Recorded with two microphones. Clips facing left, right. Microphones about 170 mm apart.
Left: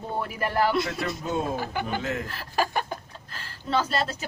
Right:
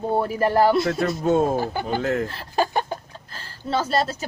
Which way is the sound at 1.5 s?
30° right (ahead or behind).